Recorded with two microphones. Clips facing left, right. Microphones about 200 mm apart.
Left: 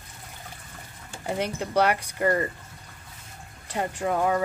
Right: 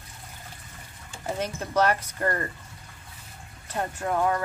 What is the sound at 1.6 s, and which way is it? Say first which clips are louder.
Speech: even; 15° left (ahead or behind).